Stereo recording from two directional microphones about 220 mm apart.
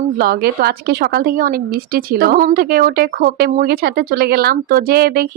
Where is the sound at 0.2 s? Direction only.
45° right (ahead or behind).